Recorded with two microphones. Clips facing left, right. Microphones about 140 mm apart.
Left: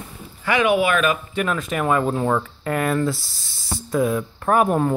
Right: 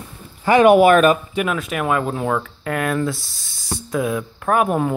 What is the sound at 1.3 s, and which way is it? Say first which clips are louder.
Speech: right 1 dB; 10° right (ahead or behind).